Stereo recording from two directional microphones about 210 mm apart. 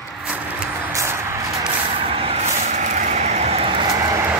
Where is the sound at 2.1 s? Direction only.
30° right (ahead or behind).